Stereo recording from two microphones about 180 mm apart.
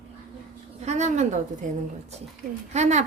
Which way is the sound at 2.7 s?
40° right (ahead or behind).